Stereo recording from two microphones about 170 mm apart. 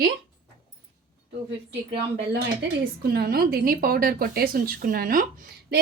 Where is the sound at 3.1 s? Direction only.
65° right (ahead or behind).